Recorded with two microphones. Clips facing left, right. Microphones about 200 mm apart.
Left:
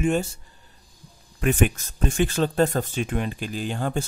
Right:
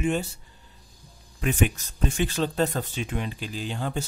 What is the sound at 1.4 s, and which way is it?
Speech, 50° left (ahead or behind).